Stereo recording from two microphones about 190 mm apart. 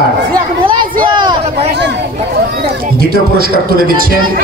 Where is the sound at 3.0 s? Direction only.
50° right (ahead or behind).